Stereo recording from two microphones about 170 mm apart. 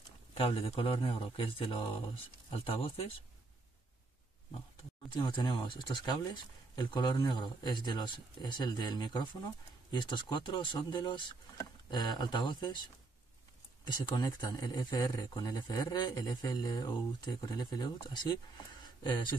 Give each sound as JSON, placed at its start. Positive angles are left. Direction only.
{"t": 0.3, "sound": "speech", "side_deg": 35}
{"t": 5.1, "sound": "speech", "side_deg": 25}
{"t": 13.8, "sound": "speech", "side_deg": 25}